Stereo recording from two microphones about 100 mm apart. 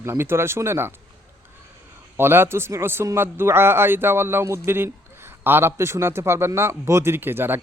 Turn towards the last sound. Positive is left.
turn(degrees=-20)  # may be behind; listen again after turning